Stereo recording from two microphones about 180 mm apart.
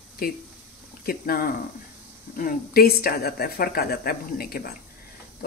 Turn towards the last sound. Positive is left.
turn(degrees=55)  # may be behind; listen again after turning